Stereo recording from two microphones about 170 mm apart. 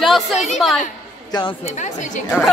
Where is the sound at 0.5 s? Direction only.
Centre (ahead or behind).